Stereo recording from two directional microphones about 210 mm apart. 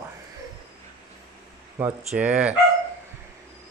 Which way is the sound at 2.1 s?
5° right (ahead or behind).